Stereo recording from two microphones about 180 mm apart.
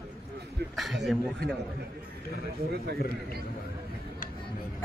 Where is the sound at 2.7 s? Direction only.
60° right (ahead or behind).